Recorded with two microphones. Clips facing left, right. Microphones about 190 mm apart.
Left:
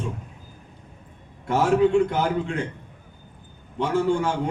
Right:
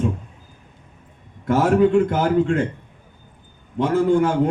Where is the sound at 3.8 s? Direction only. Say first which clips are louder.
Right 5 dB; 50° right (ahead or behind).